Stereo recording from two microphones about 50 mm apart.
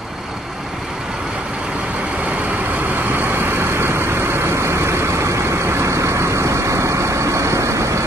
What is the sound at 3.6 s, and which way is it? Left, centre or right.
Vehicle, right.